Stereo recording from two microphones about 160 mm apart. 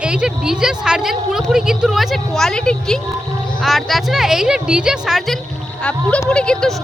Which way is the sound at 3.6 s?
Centre (ahead or behind).